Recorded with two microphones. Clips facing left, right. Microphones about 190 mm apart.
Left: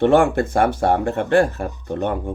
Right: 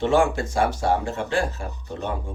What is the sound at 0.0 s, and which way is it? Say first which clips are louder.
Speech: left 5 dB; 55° left (ahead or behind).